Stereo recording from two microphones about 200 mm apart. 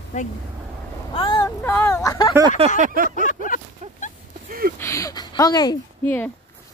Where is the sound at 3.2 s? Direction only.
40° left (ahead or behind).